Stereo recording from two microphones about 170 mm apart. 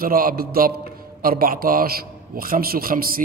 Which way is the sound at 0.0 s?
55° right (ahead or behind).